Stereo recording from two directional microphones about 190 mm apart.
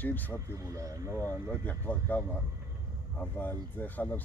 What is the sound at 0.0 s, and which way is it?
Speech, 10° left (ahead or behind).